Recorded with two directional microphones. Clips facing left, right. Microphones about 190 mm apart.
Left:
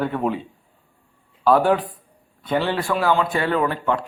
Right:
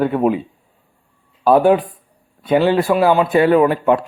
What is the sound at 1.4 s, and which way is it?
A man's voice, 20° right (ahead or behind).